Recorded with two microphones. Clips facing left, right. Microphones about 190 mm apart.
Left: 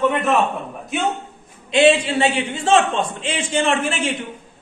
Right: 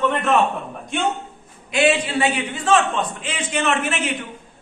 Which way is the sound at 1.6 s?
25° left (ahead or behind).